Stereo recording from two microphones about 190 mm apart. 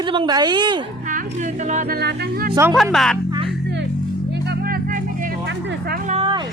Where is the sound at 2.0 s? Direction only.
60° right (ahead or behind).